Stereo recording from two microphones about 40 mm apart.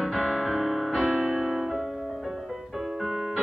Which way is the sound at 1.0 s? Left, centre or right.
Right.